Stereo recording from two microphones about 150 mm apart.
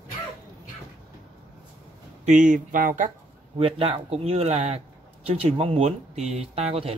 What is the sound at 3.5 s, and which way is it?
A man's voice, 35° right (ahead or behind).